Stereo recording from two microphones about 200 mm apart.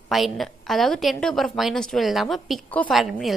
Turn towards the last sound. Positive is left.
turn(degrees=0)  # may be behind; listen again after turning